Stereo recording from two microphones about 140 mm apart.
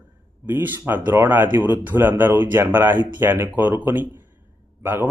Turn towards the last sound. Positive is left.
turn(degrees=-15)  # may be behind; listen again after turning